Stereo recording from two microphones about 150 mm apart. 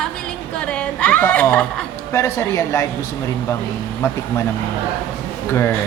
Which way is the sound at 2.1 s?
20° left (ahead or behind).